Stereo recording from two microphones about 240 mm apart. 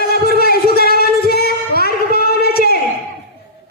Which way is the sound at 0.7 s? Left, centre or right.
Left.